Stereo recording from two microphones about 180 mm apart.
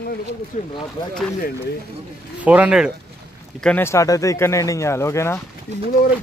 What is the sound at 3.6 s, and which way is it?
Speech, 10° left (ahead or behind).